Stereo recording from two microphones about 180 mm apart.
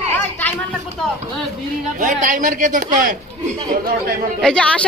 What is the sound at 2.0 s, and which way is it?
Speech, 45° right (ahead or behind).